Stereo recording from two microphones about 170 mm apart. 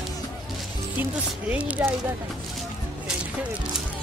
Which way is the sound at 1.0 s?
10° right (ahead or behind).